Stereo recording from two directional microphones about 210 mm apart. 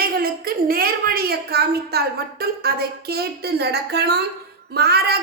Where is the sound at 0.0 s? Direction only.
45° right (ahead or behind).